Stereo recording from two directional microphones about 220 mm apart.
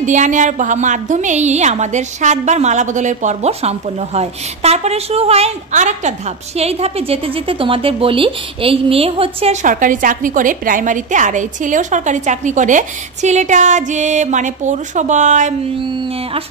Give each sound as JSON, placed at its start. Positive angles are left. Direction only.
{"t": 0.0, "sound": "a woman's voice", "side_deg": -35}